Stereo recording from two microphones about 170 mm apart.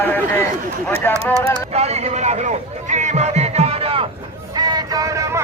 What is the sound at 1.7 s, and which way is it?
Music, 40° right (ahead or behind).